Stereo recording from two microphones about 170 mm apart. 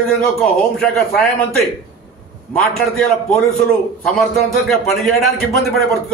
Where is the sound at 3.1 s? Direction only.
Centre (ahead or behind).